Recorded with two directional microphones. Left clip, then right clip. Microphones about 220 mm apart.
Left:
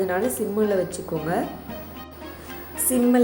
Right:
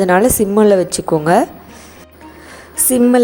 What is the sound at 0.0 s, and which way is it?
A woman's voice, 45° right (ahead or behind).